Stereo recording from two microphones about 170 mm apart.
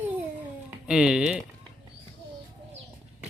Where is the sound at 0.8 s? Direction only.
5° right (ahead or behind).